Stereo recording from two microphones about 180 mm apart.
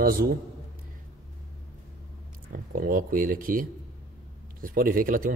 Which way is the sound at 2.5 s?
50° right (ahead or behind).